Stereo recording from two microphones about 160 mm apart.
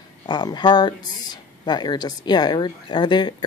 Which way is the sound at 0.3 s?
30° left (ahead or behind).